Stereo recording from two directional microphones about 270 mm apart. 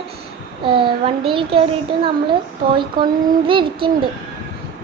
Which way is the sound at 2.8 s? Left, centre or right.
Centre.